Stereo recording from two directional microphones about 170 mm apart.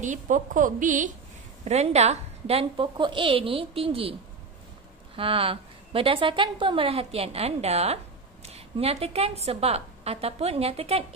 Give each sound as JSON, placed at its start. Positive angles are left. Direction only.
{"t": 0.0, "sound": "a woman's voice", "side_deg": -50}